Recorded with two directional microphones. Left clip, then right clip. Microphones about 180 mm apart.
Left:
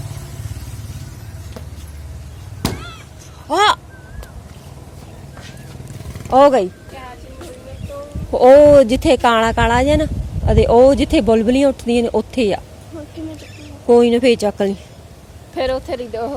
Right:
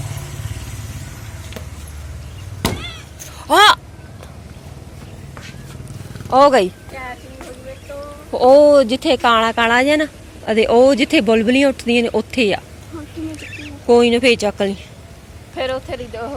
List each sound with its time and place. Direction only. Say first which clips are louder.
3.4 s a sound: right 4 dB; 10° left (ahead or behind)
6.3 s speech: left 1 dB; 35° left (ahead or behind)
8.3 s speech: left 2 dB; 35° left (ahead or behind)
15.5 s speech: left 2 dB; 75° left (ahead or behind)